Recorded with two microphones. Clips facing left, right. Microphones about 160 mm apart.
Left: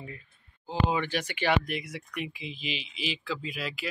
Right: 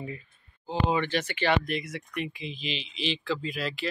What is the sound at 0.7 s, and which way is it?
Speech, 5° left (ahead or behind).